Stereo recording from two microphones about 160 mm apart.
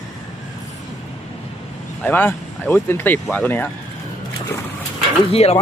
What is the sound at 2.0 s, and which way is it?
Speech, 10° left (ahead or behind).